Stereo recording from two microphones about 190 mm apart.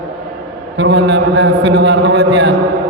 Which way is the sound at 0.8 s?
65° right (ahead or behind).